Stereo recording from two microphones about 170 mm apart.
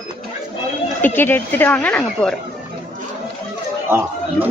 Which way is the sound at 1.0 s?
15° left (ahead or behind).